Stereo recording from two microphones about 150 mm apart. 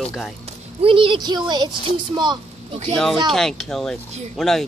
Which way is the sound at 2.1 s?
30° right (ahead or behind).